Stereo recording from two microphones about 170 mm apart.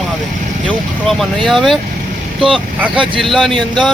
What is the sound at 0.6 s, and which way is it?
Speech, centre (ahead or behind).